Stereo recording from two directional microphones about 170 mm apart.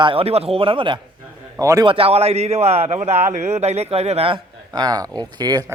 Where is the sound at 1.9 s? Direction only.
35° right (ahead or behind).